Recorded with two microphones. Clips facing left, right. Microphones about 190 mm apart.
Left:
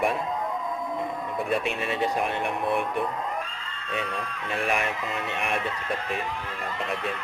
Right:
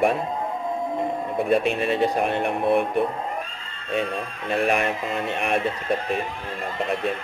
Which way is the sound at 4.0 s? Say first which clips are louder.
Right 5 dB; 30° right (ahead or behind).